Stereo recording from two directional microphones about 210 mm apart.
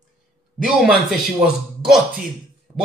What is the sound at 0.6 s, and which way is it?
Speech, centre (ahead or behind).